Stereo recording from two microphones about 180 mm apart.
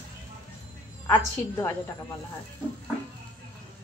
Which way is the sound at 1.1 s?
15° left (ahead or behind).